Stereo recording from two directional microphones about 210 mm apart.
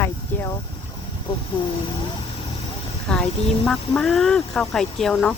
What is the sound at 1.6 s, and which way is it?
Speech, 20° left (ahead or behind).